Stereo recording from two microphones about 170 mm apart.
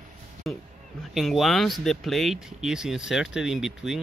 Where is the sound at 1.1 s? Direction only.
Centre (ahead or behind).